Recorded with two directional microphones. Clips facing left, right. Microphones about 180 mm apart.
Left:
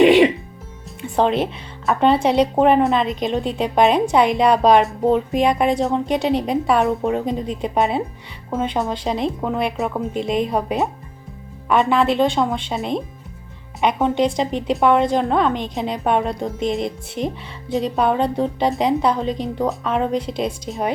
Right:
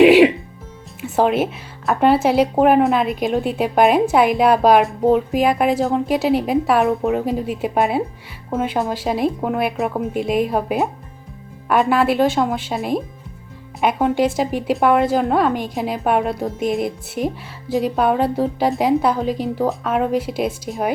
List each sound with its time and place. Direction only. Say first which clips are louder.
0.0 s music: right 2 dB; 5° right (ahead or behind)
1.0 s a woman's voice: right 1 dB; 5° right (ahead or behind)